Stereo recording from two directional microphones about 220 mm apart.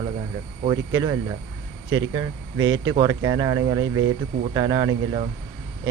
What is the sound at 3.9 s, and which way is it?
Speech, 70° right (ahead or behind).